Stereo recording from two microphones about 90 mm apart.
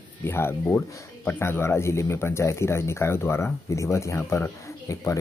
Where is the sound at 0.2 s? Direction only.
25° left (ahead or behind).